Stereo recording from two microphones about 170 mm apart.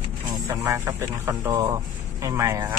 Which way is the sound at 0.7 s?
15° right (ahead or behind).